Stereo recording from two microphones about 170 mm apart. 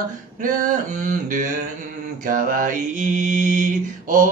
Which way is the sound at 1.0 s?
50° right (ahead or behind).